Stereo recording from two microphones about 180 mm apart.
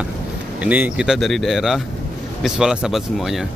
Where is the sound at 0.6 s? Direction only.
10° right (ahead or behind).